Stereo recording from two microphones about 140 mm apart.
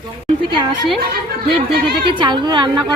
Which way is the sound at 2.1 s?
30° right (ahead or behind).